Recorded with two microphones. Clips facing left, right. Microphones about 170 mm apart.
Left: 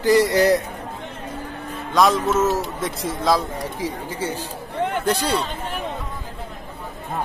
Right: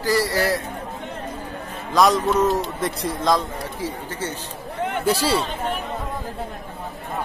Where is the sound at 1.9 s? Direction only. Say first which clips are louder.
Even; centre (ahead or behind).